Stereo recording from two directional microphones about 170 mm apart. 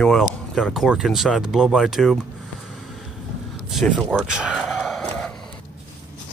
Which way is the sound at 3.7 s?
Centre (ahead or behind).